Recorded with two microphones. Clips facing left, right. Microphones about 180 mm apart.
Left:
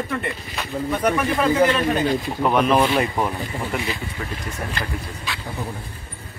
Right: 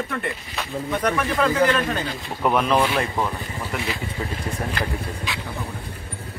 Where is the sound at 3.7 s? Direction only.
Centre (ahead or behind).